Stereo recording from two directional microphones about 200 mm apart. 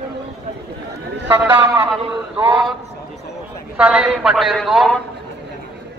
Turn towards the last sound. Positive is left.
turn(degrees=0)  # may be behind; listen again after turning